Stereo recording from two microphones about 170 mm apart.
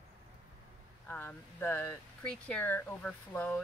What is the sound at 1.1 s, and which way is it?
Speech, 10° left (ahead or behind).